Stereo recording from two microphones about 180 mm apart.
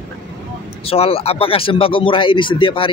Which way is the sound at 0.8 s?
35° left (ahead or behind).